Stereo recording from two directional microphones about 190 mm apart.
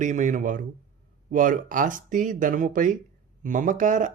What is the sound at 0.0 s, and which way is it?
Speech, 40° right (ahead or behind).